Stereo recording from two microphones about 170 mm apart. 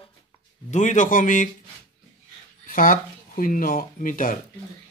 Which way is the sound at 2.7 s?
50° left (ahead or behind).